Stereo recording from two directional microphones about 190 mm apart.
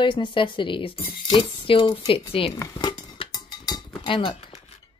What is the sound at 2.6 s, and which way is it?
Cutlery, 20° left (ahead or behind).